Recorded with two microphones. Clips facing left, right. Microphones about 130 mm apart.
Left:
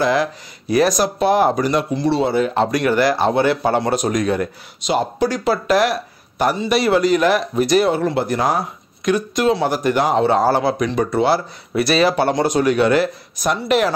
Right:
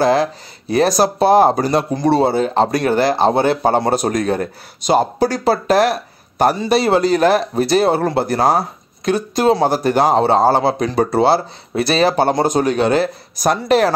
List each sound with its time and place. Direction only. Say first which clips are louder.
0.0 s speech: right 3 dB; 30° right (ahead or behind)
2.2 s speech: right 2 dB; 35° right (ahead or behind)
12.2 s speech: right 2 dB; 40° right (ahead or behind)